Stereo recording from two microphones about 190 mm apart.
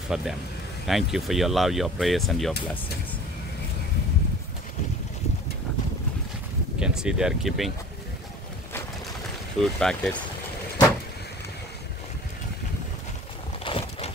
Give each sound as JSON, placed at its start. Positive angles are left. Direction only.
{"t": 0.1, "sound": "speech", "side_deg": 0}
{"t": 6.8, "sound": "speech", "side_deg": -5}
{"t": 9.6, "sound": "speech", "side_deg": 5}
{"t": 13.7, "sound": "boat", "side_deg": 30}